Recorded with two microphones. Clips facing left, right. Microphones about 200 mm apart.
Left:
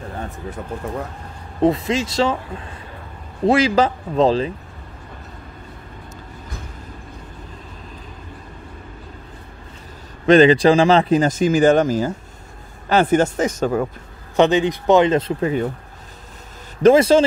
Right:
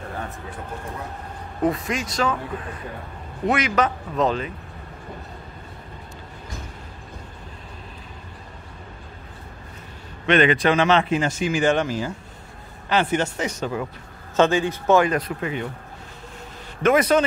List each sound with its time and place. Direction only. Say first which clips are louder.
1.6 s speech: left 6 dB; 25° left (ahead or behind)
3.4 s a man's voice: left 6 dB; 30° left (ahead or behind)
10.2 s a man's voice: left 7 dB; 35° left (ahead or behind)
14.3 s speech: left 4 dB; 20° left (ahead or behind)
16.8 s speech: left 6 dB; 30° left (ahead or behind)